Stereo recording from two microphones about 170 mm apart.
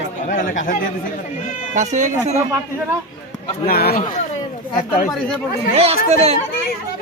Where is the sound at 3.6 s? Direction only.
65° left (ahead or behind).